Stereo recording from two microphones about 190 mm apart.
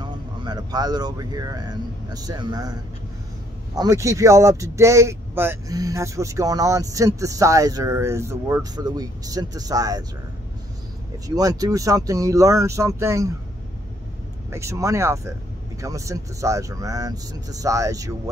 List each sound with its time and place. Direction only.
0.0 s speech: 25° right (ahead or behind)
3.7 s speech: 15° right (ahead or behind)
11.2 s speech: 20° right (ahead or behind)
14.5 s speech: 15° right (ahead or behind)